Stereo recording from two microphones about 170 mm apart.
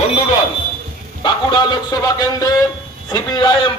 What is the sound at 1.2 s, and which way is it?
A man's voice, 25° left (ahead or behind).